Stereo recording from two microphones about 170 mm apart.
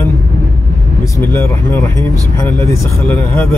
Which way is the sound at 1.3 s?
15° left (ahead or behind).